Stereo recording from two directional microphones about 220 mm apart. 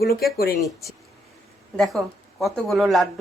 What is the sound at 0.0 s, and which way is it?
Speech, 45° left (ahead or behind).